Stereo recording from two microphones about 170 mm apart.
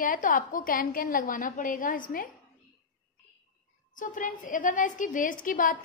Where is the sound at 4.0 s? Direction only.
50° left (ahead or behind).